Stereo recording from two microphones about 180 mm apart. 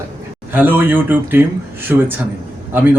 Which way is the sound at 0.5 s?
10° right (ahead or behind).